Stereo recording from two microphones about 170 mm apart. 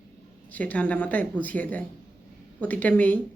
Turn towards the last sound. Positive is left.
turn(degrees=10)  # may be behind; listen again after turning